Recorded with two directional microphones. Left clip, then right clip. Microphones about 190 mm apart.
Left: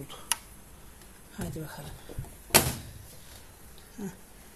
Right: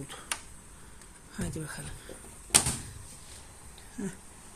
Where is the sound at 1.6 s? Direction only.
20° right (ahead or behind).